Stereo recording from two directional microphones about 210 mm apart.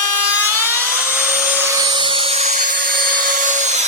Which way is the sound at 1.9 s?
25° right (ahead or behind).